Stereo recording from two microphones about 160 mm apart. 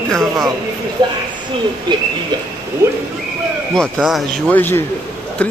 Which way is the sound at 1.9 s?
30° right (ahead or behind).